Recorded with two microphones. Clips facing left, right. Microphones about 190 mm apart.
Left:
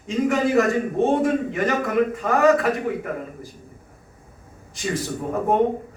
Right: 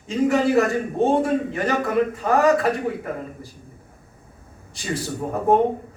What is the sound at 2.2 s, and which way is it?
Speech, 35° right (ahead or behind).